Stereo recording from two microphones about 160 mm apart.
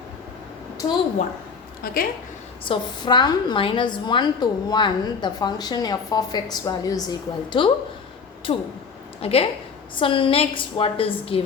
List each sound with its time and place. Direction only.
1.8 s a woman's voice: 65° left (ahead or behind)
2.6 s a woman's voice: 30° left (ahead or behind)
8.5 s a woman's voice: 35° left (ahead or behind)